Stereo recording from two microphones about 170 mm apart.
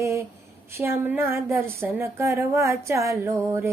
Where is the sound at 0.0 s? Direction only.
15° right (ahead or behind).